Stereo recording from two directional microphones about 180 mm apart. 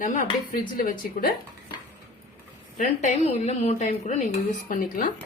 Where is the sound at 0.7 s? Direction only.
55° left (ahead or behind).